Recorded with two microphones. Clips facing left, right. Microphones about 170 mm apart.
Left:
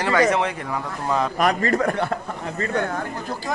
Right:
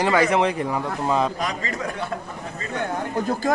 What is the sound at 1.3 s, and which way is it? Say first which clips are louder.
A man's voice: left 8 dB; 60° left (ahead or behind).